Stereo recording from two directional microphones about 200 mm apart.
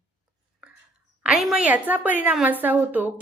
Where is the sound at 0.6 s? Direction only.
5° right (ahead or behind).